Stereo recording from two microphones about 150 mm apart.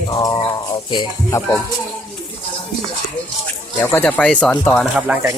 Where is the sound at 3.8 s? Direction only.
10° left (ahead or behind).